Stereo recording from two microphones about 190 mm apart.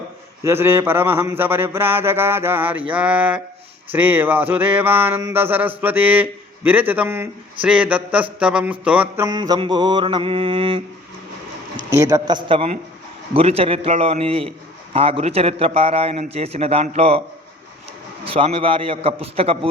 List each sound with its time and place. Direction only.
0.4 s a sound: 10° right (ahead or behind)
8.8 s mantra: 5° right (ahead or behind); by 10.8 s 30° right (ahead or behind)
11.9 s mantra: 15° right (ahead or behind)
13.3 s a man's voice: 30° right (ahead or behind)
18.3 s mantra: 30° right (ahead or behind)